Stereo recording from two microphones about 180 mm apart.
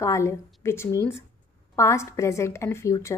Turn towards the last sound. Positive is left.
turn(degrees=15)  # may be behind; listen again after turning